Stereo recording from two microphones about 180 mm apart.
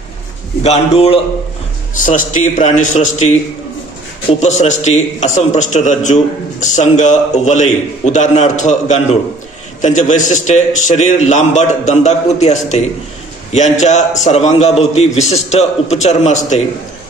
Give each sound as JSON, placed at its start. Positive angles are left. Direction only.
{"t": 0.7, "sound": "a man's voice", "side_deg": 35}
{"t": 2.0, "sound": "a man's voice", "side_deg": 45}